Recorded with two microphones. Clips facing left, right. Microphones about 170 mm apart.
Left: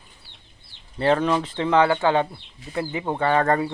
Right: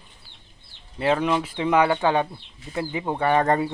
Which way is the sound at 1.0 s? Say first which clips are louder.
Left 2 dB; 10° right (ahead or behind).